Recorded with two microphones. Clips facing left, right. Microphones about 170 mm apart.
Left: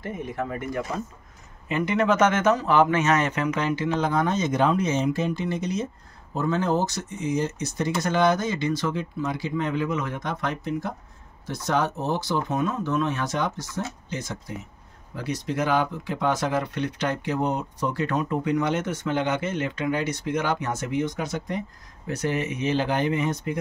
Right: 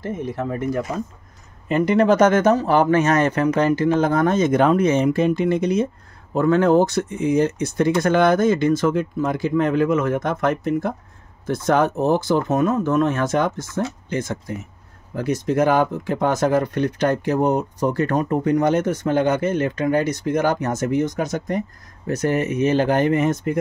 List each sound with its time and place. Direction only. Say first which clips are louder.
0.0 s speech: right 5 dB; 35° right (ahead or behind)
1.7 s speech: right 6 dB; 40° right (ahead or behind)